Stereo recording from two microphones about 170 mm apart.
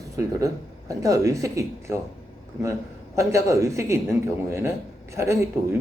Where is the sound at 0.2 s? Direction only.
20° right (ahead or behind).